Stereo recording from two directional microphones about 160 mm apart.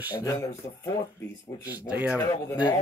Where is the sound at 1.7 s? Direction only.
10° right (ahead or behind).